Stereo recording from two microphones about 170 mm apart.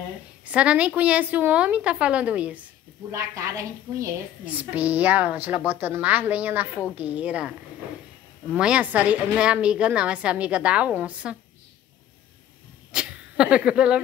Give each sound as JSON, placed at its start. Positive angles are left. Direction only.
{"t": 0.5, "sound": "a woman's voice", "side_deg": -5}
{"t": 3.1, "sound": "a woman's voice", "side_deg": -20}
{"t": 12.9, "sound": "speech", "side_deg": -5}